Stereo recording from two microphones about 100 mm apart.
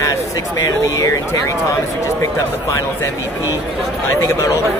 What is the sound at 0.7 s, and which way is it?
Speech, 35° left (ahead or behind).